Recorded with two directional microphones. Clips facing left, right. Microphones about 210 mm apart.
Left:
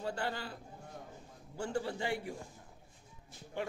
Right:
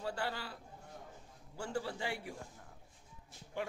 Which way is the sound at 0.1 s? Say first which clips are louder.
Left 2 dB; 10° right (ahead or behind).